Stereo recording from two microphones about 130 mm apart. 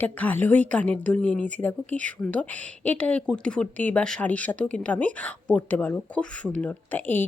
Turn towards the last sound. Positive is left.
turn(degrees=15)  # may be behind; listen again after turning